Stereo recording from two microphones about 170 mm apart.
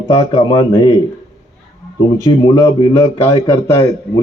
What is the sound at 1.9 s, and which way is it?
Speech, 25° left (ahead or behind).